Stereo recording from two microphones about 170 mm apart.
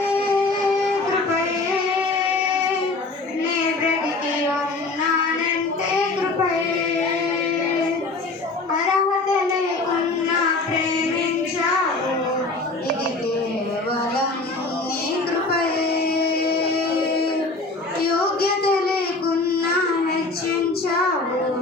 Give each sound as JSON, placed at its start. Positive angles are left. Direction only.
{"t": 15.4, "sound": "child singing", "side_deg": 65}
{"t": 18.0, "sound": "child singing", "side_deg": 65}